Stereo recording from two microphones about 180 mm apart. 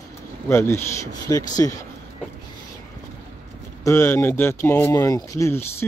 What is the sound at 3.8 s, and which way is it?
Speech, 15° left (ahead or behind).